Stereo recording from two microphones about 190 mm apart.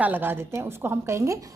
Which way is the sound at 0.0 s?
10° right (ahead or behind).